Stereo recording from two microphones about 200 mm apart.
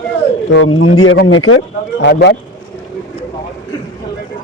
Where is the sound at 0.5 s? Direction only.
65° left (ahead or behind).